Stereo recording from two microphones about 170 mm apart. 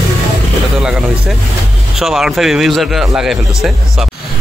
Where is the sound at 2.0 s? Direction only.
Centre (ahead or behind).